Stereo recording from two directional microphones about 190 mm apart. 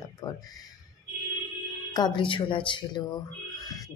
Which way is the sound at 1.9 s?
25° left (ahead or behind).